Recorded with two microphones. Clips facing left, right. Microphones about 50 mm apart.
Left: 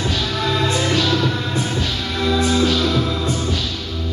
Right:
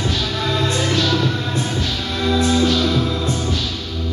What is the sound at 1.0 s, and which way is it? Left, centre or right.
Music, centre.